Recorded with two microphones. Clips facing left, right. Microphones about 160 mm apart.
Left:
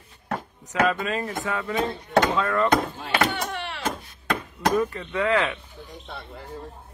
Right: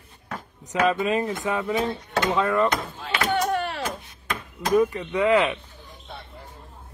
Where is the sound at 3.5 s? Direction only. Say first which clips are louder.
Right 7 dB; 45° right (ahead or behind).